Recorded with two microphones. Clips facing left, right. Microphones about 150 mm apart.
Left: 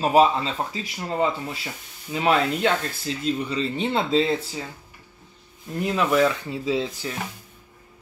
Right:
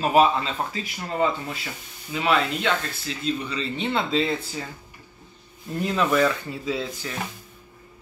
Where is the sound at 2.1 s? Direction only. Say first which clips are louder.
Left 2 dB; 35° left (ahead or behind).